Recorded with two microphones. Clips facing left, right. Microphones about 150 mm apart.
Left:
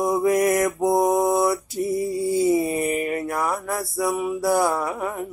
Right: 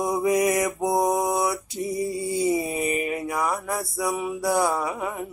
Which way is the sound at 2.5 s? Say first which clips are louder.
Left 4 dB; 10° right (ahead or behind).